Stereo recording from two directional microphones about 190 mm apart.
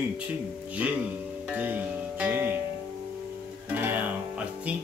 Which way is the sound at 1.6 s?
10° right (ahead or behind).